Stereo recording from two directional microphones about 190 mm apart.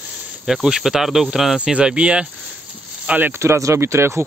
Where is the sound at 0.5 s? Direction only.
5° right (ahead or behind).